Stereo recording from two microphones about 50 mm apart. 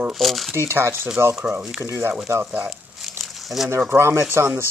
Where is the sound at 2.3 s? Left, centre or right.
Right.